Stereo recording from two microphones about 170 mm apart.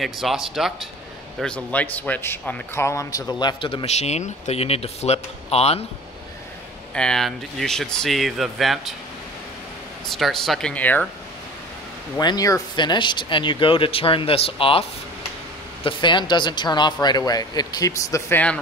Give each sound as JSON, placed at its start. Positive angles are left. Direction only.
{"t": 0.0, "sound": "a man's voice", "side_deg": 0}
{"t": 6.9, "sound": "speech", "side_deg": 5}
{"t": 10.1, "sound": "speech", "side_deg": 0}
{"t": 12.2, "sound": "a man's voice", "side_deg": 25}